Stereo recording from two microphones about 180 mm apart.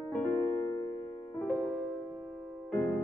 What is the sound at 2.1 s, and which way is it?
Music, 5° left (ahead or behind).